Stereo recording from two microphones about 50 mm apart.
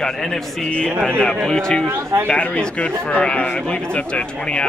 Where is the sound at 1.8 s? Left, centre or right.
Right.